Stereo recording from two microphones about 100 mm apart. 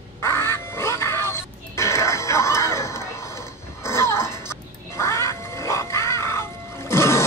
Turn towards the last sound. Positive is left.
turn(degrees=25)  # may be behind; listen again after turning